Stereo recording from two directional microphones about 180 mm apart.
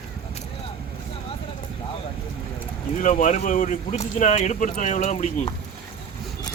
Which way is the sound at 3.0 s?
45° left (ahead or behind).